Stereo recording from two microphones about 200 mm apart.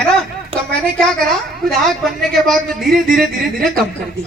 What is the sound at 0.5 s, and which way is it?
Speech, 30° right (ahead or behind).